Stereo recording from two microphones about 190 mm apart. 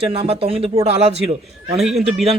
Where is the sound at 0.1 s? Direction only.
30° right (ahead or behind).